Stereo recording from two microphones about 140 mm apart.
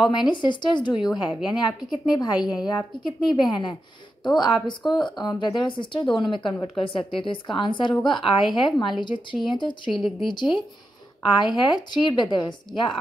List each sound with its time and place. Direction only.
0.0 s a woman's voice: 35° left (ahead or behind)
11.3 s speech: 30° left (ahead or behind)